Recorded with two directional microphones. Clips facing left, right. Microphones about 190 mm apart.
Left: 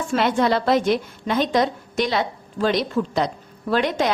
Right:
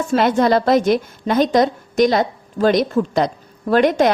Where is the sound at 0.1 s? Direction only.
40° right (ahead or behind).